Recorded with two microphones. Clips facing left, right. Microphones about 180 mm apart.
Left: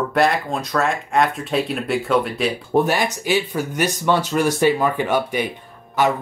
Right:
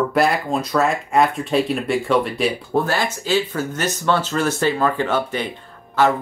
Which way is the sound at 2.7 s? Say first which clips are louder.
Left 2 dB; 15° left (ahead or behind).